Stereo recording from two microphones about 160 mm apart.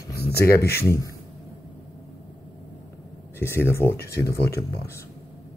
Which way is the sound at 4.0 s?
85° left.